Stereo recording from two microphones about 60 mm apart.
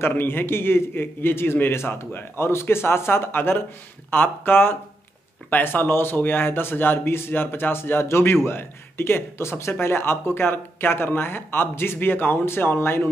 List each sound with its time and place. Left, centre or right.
0.0 s speech: left